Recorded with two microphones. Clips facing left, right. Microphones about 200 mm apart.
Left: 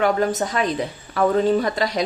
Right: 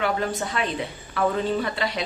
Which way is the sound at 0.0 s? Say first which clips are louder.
Left 6 dB; 45° left (ahead or behind).